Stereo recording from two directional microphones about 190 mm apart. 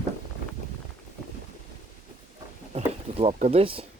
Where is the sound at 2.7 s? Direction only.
35° right (ahead or behind).